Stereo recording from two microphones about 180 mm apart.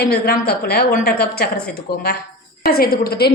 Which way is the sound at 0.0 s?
60° left (ahead or behind).